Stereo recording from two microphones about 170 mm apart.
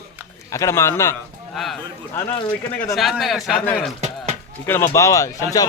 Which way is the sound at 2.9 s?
Centre (ahead or behind).